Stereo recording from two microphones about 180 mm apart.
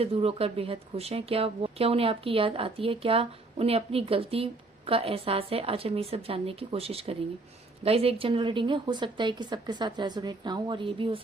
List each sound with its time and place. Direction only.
0.0 s speech: 35° right (ahead or behind)